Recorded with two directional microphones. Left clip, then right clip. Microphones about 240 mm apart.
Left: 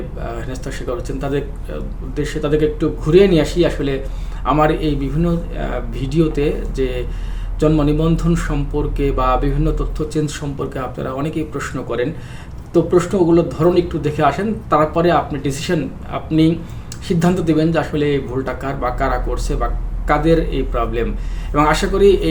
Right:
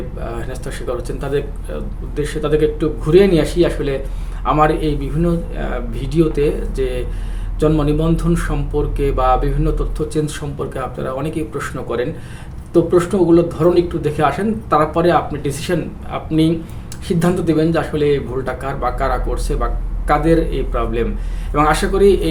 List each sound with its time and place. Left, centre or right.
0.3 s speech: centre